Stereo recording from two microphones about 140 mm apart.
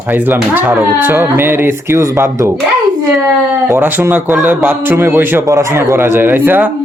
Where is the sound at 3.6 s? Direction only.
15° right (ahead or behind).